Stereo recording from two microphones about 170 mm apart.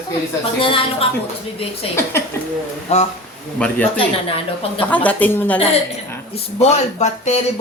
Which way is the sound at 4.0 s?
30° left (ahead or behind).